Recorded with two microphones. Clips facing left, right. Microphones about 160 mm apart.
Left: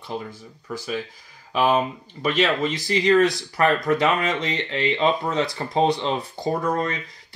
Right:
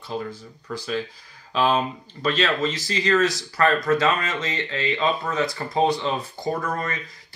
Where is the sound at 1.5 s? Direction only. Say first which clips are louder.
Left 1 dB; 15° left (ahead or behind).